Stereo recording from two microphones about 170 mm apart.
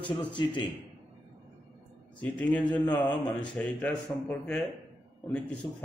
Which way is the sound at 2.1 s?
10° left (ahead or behind).